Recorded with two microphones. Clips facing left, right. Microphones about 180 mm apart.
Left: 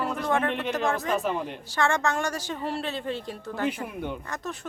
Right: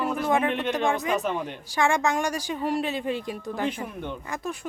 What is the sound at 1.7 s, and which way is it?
Speech, 15° right (ahead or behind).